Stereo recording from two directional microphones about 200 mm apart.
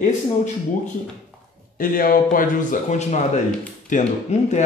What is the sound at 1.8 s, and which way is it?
A man's voice, 45° left (ahead or behind).